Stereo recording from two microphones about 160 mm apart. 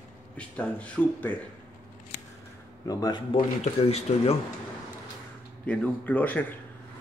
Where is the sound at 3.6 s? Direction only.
40° left (ahead or behind).